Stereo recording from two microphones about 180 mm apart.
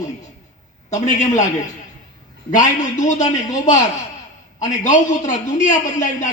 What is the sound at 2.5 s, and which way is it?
A man's voice, 45° left (ahead or behind).